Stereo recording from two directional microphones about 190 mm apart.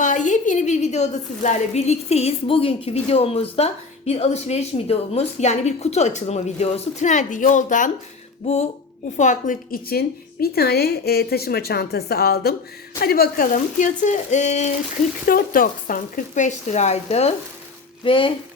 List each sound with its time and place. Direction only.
0.0 s a woman's voice: 40° left (ahead or behind)
9.1 s a woman's voice: 40° left (ahead or behind)